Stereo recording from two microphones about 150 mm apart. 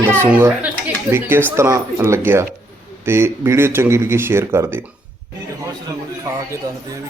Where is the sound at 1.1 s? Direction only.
15° right (ahead or behind).